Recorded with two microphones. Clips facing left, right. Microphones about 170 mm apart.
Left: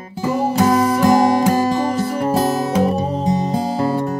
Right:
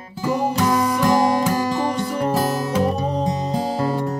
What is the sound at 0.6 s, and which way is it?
Music, 35° left (ahead or behind).